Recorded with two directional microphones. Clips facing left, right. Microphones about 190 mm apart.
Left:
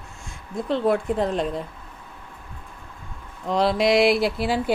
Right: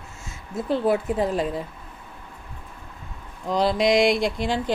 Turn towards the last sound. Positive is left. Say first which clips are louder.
# left 2 dB
turn(degrees=5)  # may be behind; listen again after turning